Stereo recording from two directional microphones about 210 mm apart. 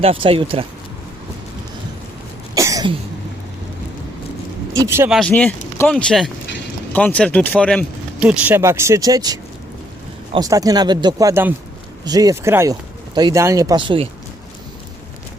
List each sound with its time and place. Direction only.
0.0 s speech: 25° right (ahead or behind)
2.6 s cough: 15° right (ahead or behind)
4.8 s speech: 10° right (ahead or behind)
5.3 s speech: 10° left (ahead or behind)
8.2 s speech: 5° right (ahead or behind); by 14.1 s 25° right (ahead or behind)